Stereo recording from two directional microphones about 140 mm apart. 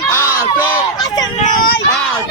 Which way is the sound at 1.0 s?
25° left (ahead or behind).